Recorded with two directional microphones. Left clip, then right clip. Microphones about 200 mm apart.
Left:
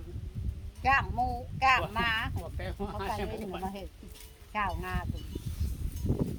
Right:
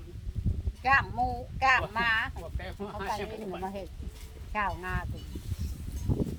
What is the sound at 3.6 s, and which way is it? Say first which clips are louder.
A child's voice: right 2 dB; 15° right (ahead or behind).